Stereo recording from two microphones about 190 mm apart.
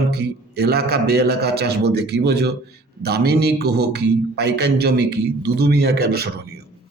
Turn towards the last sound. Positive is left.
turn(degrees=-55)  # may be behind; listen again after turning